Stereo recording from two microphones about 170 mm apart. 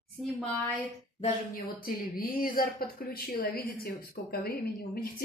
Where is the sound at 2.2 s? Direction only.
55° left (ahead or behind).